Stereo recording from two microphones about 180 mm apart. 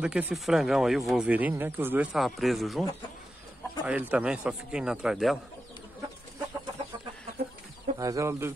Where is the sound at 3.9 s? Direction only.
10° right (ahead or behind).